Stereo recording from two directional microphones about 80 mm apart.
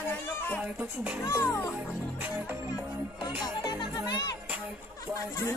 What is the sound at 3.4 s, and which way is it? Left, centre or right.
Music, left.